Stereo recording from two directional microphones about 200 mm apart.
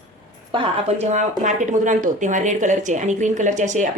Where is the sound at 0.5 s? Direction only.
30° right (ahead or behind).